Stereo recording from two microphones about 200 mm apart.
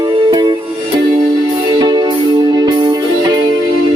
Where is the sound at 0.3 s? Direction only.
20° right (ahead or behind).